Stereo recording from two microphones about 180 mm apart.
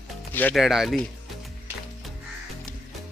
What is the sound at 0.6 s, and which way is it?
Speech, centre (ahead or behind).